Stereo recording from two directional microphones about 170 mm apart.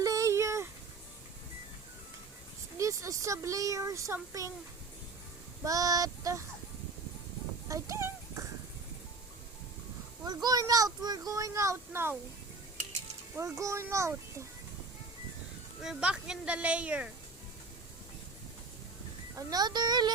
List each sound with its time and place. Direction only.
0.0 s a sound: 20° right (ahead or behind)
2.7 s speech: 20° right (ahead or behind)
5.6 s speech: 20° right (ahead or behind)
7.7 s speech: 15° right (ahead or behind)
10.2 s speech: 25° right (ahead or behind)
13.3 s speech: 15° right (ahead or behind)
15.8 s speech: 5° right (ahead or behind)
19.4 s speech: 20° right (ahead or behind)